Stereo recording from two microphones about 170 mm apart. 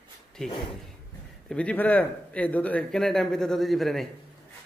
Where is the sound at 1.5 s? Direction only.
10° left (ahead or behind).